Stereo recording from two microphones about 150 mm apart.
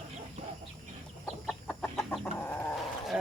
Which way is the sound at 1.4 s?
Centre (ahead or behind).